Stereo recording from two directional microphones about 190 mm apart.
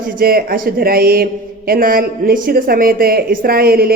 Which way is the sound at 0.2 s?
50° right (ahead or behind).